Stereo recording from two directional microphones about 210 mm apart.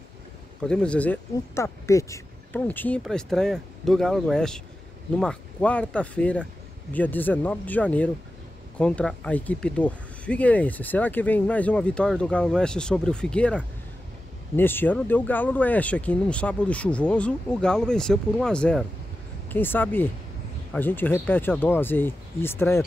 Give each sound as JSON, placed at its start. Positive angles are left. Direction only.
{"t": 0.7, "sound": "speech", "side_deg": 5}